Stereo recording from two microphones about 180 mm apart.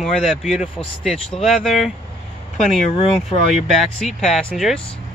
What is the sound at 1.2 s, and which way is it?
Speech, 35° left (ahead or behind).